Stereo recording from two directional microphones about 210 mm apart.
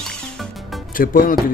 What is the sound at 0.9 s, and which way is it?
Speech, 40° left (ahead or behind).